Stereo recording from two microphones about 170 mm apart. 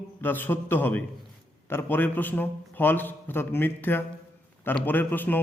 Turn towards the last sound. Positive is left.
turn(degrees=10)  # may be behind; listen again after turning